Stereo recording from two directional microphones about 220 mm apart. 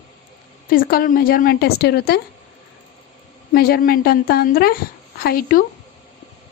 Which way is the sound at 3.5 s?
45° left (ahead or behind).